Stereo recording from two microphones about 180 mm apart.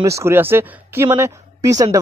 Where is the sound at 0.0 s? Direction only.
15° right (ahead or behind).